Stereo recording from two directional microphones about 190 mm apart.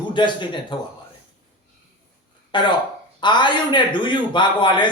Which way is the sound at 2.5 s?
25° left (ahead or behind).